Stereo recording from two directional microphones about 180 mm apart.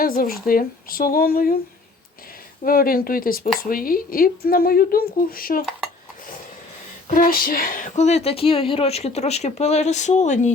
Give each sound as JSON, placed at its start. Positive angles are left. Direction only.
{"t": 0.0, "sound": "speech", "side_deg": 55}
{"t": 2.6, "sound": "speech", "side_deg": 55}
{"t": 7.1, "sound": "speech", "side_deg": 50}